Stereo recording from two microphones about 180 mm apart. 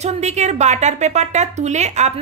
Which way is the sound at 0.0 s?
40° right (ahead or behind).